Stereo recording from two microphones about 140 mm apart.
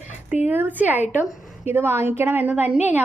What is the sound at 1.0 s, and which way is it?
Speech, 60° left (ahead or behind).